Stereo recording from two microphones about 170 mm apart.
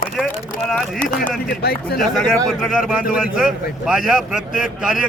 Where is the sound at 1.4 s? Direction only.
65° left (ahead or behind).